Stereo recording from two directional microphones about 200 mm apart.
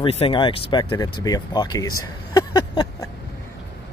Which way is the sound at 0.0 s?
30° left (ahead or behind).